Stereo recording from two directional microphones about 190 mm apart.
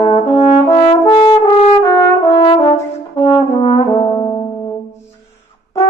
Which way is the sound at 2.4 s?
20° left (ahead or behind).